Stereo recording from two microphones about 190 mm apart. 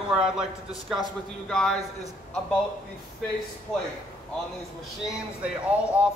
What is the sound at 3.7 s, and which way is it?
Speech, centre (ahead or behind).